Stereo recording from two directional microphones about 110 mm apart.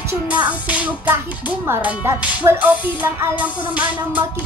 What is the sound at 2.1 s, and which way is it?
Music, 20° right (ahead or behind).